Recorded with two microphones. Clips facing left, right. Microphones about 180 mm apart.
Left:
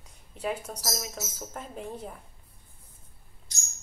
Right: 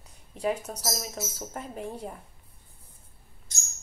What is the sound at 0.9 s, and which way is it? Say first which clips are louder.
A woman's voice: right 2 dB; 5° right (ahead or behind).